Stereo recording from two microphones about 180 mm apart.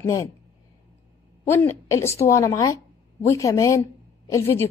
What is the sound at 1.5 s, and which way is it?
A woman's voice, 15° left (ahead or behind).